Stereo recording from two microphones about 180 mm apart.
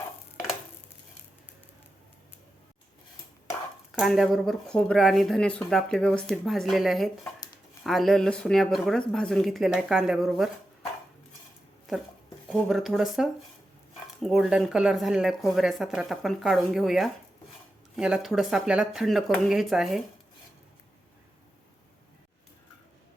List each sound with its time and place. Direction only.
3.9 s speech: centre (ahead or behind)
7.3 s a sound: 20° left (ahead or behind)
7.9 s speech: centre (ahead or behind)
12.5 s speech: centre (ahead or behind)